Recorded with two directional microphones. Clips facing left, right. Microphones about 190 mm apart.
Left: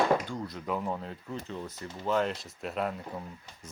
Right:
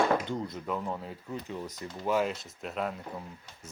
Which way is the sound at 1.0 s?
5° right (ahead or behind).